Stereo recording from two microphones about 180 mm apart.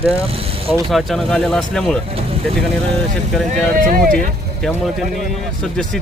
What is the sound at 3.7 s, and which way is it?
Speech, 50° right (ahead or behind).